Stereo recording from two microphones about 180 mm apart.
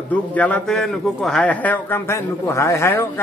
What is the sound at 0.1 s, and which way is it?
A man's voice, 10° left (ahead or behind).